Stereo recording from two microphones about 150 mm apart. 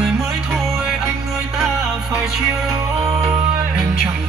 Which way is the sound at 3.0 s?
20° right (ahead or behind).